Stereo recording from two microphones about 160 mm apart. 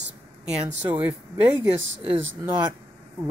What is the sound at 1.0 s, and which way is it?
Speech, 10° right (ahead or behind).